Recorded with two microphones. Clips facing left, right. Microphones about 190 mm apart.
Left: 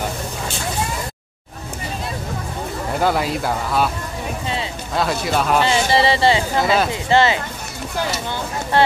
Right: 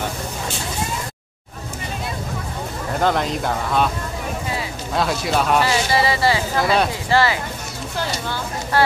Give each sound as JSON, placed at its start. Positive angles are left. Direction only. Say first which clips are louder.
{"t": 3.0, "sound": "speech", "louder": "even", "side_deg": 5}
{"t": 4.9, "sound": "speech", "louder": "even", "side_deg": 0}
{"t": 5.6, "sound": "speech", "louder": "left 2 dB", "side_deg": 25}
{"t": 6.6, "sound": "speech", "louder": "right 1 dB", "side_deg": 0}
{"t": 6.9, "sound": "speech", "louder": "left 2 dB", "side_deg": 20}